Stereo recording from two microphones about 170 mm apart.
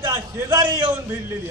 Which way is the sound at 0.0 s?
20° right (ahead or behind).